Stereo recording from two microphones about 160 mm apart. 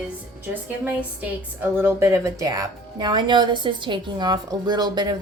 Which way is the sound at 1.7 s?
15° right (ahead or behind).